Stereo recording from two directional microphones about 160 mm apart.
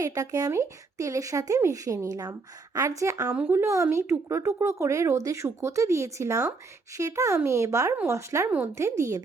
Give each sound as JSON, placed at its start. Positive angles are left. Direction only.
{"t": 0.0, "sound": "a woman's voice", "side_deg": -20}